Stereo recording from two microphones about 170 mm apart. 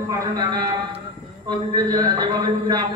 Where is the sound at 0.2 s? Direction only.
25° right (ahead or behind).